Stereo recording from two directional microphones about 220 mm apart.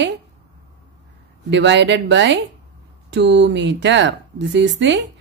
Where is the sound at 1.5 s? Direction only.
55° right (ahead or behind).